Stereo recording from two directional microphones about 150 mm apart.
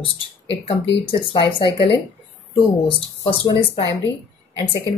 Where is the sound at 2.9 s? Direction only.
35° left (ahead or behind).